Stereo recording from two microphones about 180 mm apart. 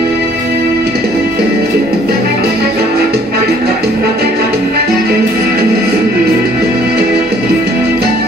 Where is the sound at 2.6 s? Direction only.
60° right (ahead or behind).